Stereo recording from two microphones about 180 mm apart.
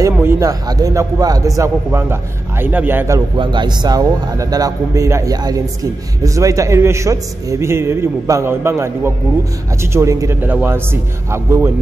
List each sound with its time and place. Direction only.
0.0 s a man's voice: 15° right (ahead or behind)
3.3 s a man's voice: 25° right (ahead or behind)